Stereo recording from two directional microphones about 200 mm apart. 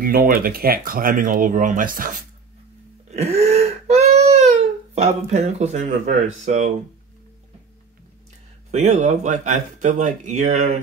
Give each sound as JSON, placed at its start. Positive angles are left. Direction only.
{"t": 0.0, "sound": "speech", "side_deg": -45}
{"t": 3.1, "sound": "wail", "side_deg": -30}
{"t": 4.9, "sound": "speech", "side_deg": -35}
{"t": 8.7, "sound": "speech", "side_deg": -35}